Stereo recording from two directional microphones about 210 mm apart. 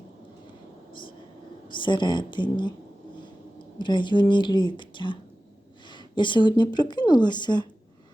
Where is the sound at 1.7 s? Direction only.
25° left (ahead or behind).